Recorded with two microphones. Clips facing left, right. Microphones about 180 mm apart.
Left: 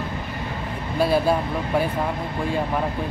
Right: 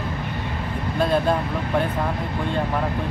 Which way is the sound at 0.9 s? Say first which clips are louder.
Left 1 dB; 5° left (ahead or behind).